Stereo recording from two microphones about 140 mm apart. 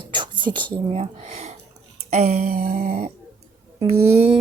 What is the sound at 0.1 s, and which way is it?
Speech, 35° right (ahead or behind).